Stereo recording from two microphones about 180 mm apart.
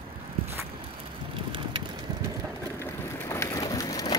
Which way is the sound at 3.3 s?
20° left (ahead or behind).